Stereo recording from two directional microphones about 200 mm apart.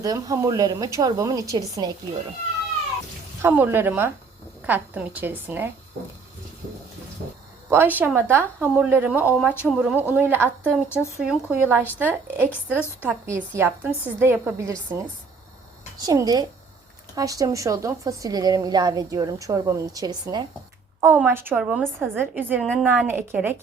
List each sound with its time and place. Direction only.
0.0 s a woman's voice: 20° right (ahead or behind)
3.4 s a woman's voice: 10° right (ahead or behind)
7.7 s a woman's voice: 10° right (ahead or behind)
10.8 s speech: 10° left (ahead or behind)
11.2 s a woman's voice: 5° right (ahead or behind)
16.0 s a woman's voice: 20° right (ahead or behind)
21.0 s a woman's voice: 10° right (ahead or behind)